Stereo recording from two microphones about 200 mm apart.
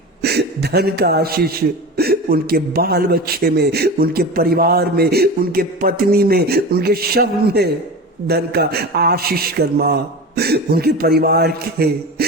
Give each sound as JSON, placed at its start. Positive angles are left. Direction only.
{"t": 0.2, "sound": "a man's voice", "side_deg": -55}